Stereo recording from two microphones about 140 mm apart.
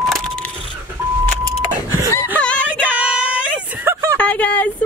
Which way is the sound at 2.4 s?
10° left (ahead or behind).